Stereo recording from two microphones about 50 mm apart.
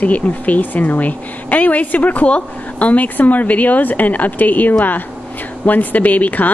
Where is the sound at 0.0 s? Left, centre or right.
Left.